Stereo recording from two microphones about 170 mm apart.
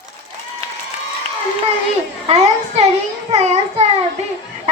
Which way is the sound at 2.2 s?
40° right (ahead or behind).